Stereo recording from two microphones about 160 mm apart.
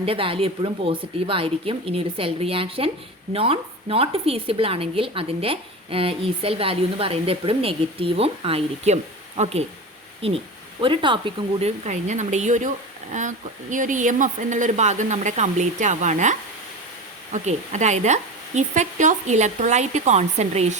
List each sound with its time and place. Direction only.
0.0 s speech: 35° right (ahead or behind)
11.9 s speech: 50° right (ahead or behind)